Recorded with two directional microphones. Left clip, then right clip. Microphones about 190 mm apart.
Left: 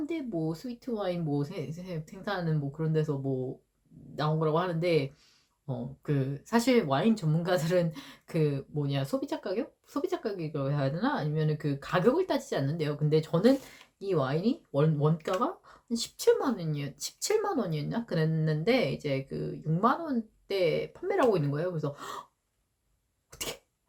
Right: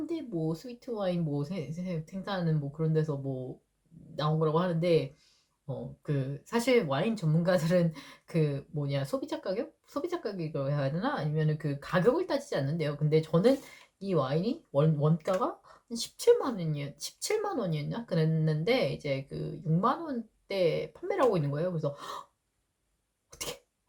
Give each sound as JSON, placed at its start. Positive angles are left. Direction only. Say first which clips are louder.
{"t": 0.0, "sound": "speech", "louder": "left 1 dB", "side_deg": 15}
{"t": 23.3, "sound": "cough", "louder": "left 1 dB", "side_deg": 15}